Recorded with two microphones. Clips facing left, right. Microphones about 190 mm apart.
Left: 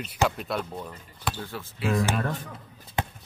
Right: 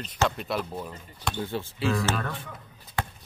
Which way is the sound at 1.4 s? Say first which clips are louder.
Right 5 dB; 25° right (ahead or behind).